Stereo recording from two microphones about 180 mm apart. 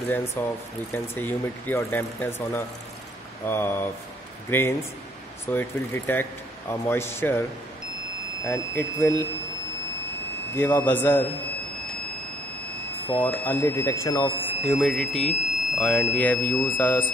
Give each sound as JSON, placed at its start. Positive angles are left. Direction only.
{"t": 0.1, "sound": "speech", "side_deg": 10}
{"t": 8.5, "sound": "speech", "side_deg": 15}
{"t": 10.5, "sound": "speech", "side_deg": 10}
{"t": 11.4, "sound": "a sound", "side_deg": -40}
{"t": 13.2, "sound": "speech", "side_deg": 10}
{"t": 14.5, "sound": "speech", "side_deg": 0}